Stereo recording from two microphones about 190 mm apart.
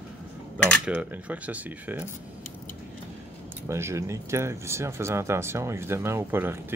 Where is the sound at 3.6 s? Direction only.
15° right (ahead or behind).